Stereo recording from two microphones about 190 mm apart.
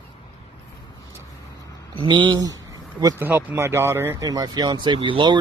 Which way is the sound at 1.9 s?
25° right (ahead or behind).